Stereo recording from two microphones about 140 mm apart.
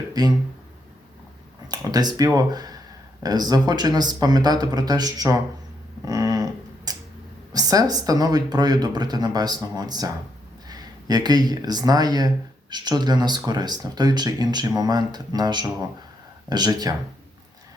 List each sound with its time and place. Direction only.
0.1 s speech: 30° right (ahead or behind)
1.6 s speech: 30° right (ahead or behind)
6.1 s a sound: 25° right (ahead or behind)
7.5 s speech: 25° right (ahead or behind)